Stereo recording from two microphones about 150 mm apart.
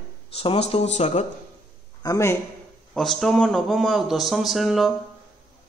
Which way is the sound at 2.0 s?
20° left (ahead or behind).